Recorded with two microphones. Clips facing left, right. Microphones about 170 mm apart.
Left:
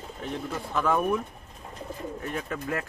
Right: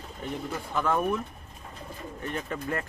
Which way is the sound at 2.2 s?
5° left (ahead or behind).